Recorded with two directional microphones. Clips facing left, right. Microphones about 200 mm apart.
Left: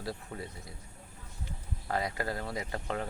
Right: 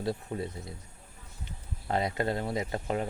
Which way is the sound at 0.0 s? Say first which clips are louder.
Right 7 dB; 25° right (ahead or behind).